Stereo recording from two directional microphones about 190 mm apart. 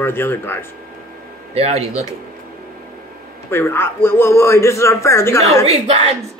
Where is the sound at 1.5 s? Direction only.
35° right (ahead or behind).